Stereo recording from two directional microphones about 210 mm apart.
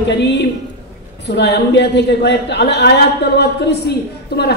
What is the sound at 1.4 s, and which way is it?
A woman's voice, 55° left (ahead or behind).